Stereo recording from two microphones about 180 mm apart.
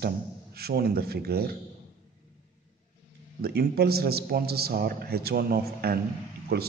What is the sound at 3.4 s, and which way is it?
A man's voice, 60° right (ahead or behind).